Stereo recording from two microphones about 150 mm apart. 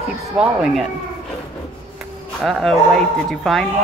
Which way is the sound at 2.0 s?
Centre (ahead or behind).